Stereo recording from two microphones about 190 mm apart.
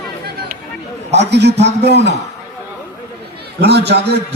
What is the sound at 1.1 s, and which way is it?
Speech, 65° right (ahead or behind).